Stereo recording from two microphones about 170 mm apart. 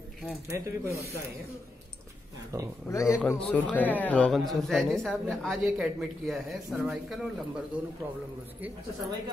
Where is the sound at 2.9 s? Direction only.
20° left (ahead or behind); by 7.6 s centre (ahead or behind).